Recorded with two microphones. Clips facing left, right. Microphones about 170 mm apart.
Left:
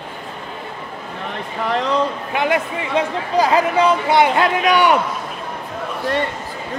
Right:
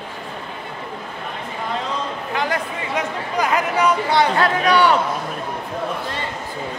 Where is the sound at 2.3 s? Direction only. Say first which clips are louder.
Left 4 dB; 20° left (ahead or behind).